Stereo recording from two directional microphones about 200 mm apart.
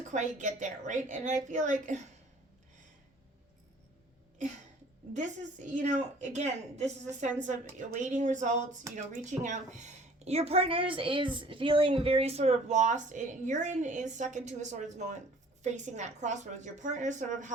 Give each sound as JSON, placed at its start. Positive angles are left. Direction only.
{"t": 0.0, "sound": "a woman's voice", "side_deg": -40}
{"t": 5.1, "sound": "a woman's voice", "side_deg": -35}